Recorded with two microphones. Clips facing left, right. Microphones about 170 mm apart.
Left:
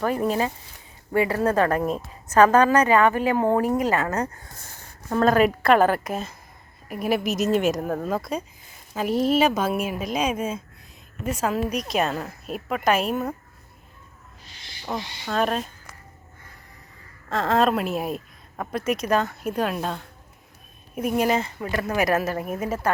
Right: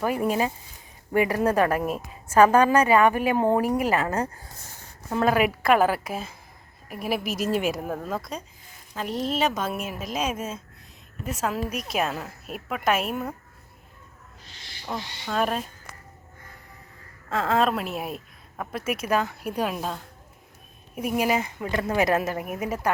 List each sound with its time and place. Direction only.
0.0 s a woman's voice: 10° right (ahead or behind)
4.1 s speech: 30° right (ahead or behind)
5.1 s a woman's voice: 10° right (ahead or behind)
14.8 s speech: 5° left (ahead or behind)
15.4 s a woman's voice: 10° right (ahead or behind)
17.2 s a woman's voice: 5° right (ahead or behind)